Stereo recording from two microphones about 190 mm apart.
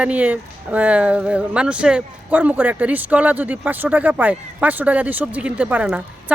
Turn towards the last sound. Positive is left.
turn(degrees=-5)  # may be behind; listen again after turning